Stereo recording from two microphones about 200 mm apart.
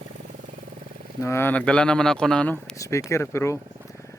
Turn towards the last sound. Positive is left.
turn(degrees=15)  # may be behind; listen again after turning